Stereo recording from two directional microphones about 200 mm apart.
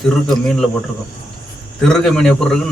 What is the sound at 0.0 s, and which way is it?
Speech, centre (ahead or behind).